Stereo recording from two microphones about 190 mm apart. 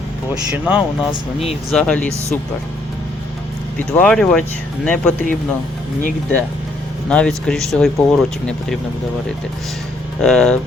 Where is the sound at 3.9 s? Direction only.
5° left (ahead or behind).